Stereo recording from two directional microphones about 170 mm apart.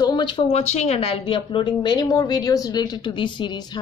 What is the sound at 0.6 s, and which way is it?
A woman's voice, 40° left (ahead or behind).